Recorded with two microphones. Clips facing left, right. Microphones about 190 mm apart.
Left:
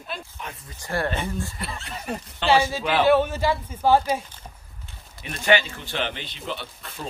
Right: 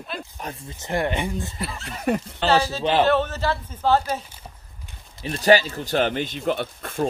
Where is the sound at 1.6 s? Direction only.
Centre (ahead or behind).